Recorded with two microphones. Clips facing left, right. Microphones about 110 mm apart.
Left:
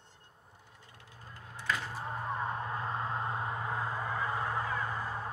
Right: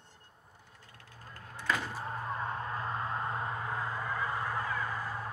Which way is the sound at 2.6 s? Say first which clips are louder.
Even; 15° left (ahead or behind).